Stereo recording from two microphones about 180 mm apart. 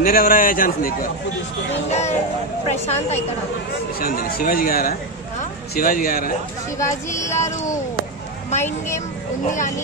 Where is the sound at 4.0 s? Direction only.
55° left (ahead or behind).